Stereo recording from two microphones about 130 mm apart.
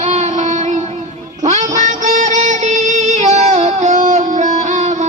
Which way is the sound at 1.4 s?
60° right (ahead or behind).